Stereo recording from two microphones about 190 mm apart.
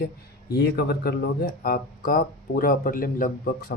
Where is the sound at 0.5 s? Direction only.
55° left (ahead or behind).